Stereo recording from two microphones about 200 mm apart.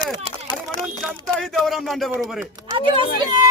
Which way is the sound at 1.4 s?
Centre (ahead or behind).